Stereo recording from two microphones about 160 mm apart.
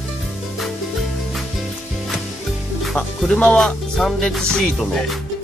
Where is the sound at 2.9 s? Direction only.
5° left (ahead or behind).